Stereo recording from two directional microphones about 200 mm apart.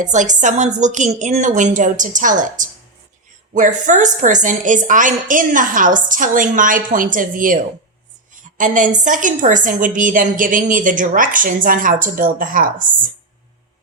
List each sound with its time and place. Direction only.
0.0 s a woman's voice: 40° right (ahead or behind)